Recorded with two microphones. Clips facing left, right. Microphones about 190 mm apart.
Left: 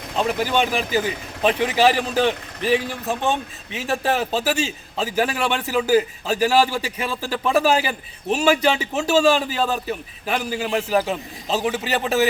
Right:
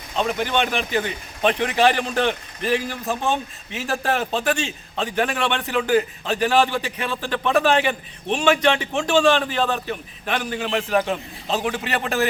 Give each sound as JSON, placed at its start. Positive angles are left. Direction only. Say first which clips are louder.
{"t": 0.2, "sound": "a man's voice", "louder": "left 1 dB", "side_deg": 5}